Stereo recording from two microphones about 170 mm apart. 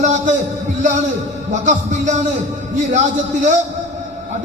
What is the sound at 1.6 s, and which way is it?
Speech, 45° right (ahead or behind).